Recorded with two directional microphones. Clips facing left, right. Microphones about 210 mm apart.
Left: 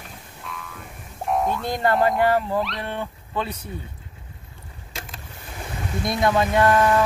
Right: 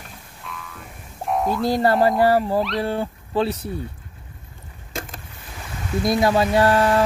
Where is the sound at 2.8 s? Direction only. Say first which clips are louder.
Right 6 dB; 35° right (ahead or behind).